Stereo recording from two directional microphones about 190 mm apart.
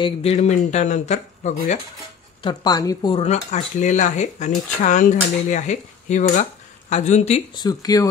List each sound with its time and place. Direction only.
0.0 s speech: 35° left (ahead or behind)
2.4 s speech: 20° left (ahead or behind)
7.5 s speech: 20° left (ahead or behind)